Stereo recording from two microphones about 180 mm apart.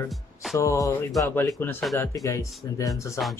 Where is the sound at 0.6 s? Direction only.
15° left (ahead or behind).